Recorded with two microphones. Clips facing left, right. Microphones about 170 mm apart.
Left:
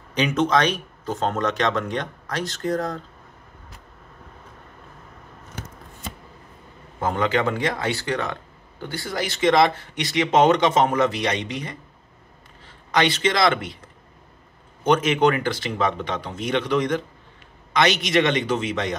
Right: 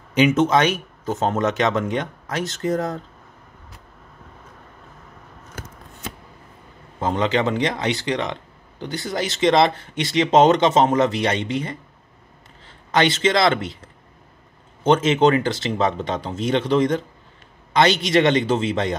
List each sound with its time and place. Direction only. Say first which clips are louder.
0.4 s speech: right 2 dB; 5° right (ahead or behind)
7.0 s speech: right 2 dB; 25° right (ahead or behind)
12.9 s speech: right 3 dB; 25° right (ahead or behind)
14.8 s speech: right 2 dB; 25° right (ahead or behind)